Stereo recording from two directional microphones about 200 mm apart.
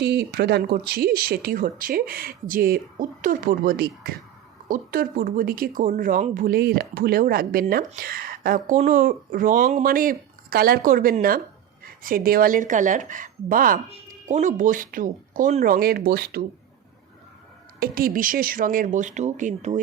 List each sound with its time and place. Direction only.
0.0 s speech: 55° right (ahead or behind)
17.7 s speech: 45° right (ahead or behind)